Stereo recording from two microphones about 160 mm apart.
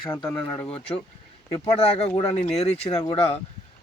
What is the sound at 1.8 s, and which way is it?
Speech, 40° left (ahead or behind).